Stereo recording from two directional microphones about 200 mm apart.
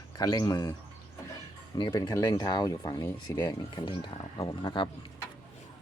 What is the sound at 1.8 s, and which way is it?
Speech, 20° left (ahead or behind).